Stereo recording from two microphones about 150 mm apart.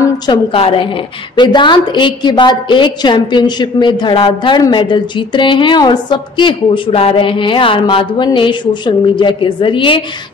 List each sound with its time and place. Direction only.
0.3 s a woman's voice: 40° left (ahead or behind)